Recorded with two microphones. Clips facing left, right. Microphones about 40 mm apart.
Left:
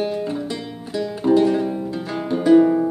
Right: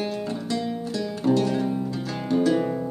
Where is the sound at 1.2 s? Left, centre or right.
Centre.